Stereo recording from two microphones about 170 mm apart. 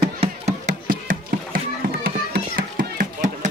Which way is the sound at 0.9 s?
55° right (ahead or behind).